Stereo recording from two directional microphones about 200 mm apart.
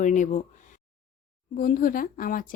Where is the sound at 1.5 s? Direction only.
45° left (ahead or behind).